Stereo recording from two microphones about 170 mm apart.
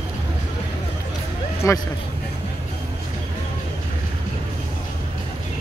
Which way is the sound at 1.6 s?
20° left (ahead or behind).